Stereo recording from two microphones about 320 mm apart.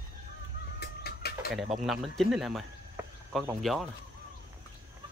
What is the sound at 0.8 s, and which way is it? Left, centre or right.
Chicken, left.